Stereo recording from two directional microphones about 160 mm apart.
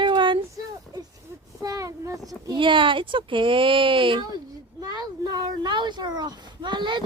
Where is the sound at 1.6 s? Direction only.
20° right (ahead or behind).